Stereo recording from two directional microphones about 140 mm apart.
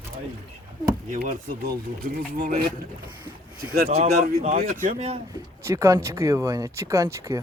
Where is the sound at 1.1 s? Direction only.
70° right (ahead or behind).